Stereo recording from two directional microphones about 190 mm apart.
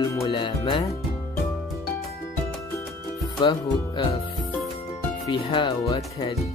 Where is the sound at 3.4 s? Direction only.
25° left (ahead or behind).